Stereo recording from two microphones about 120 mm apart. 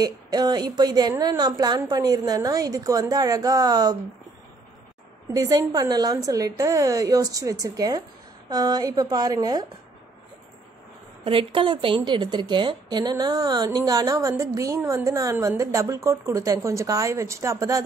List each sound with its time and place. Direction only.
0.0 s a woman's voice: 35° right (ahead or behind)
5.3 s a woman's voice: 30° right (ahead or behind)
11.2 s a woman's voice: 45° right (ahead or behind); by 17.8 s 25° right (ahead or behind)